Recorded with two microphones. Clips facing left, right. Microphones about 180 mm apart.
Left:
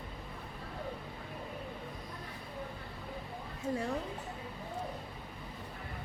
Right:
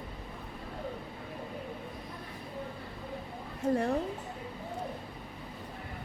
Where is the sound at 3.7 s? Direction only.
55° right (ahead or behind).